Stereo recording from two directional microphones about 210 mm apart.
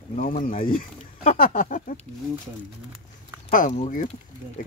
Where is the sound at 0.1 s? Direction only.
40° left (ahead or behind).